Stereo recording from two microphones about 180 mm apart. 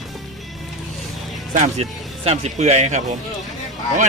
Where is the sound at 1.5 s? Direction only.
40° right (ahead or behind).